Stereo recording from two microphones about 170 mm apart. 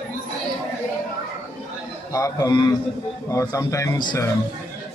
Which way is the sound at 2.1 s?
20° left (ahead or behind).